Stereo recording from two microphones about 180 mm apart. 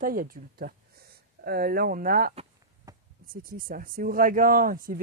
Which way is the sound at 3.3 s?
50° right (ahead or behind).